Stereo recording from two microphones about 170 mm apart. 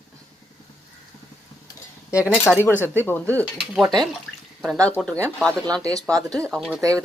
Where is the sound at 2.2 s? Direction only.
5° right (ahead or behind).